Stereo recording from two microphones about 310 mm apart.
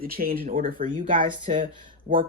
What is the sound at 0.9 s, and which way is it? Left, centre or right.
Speech, centre.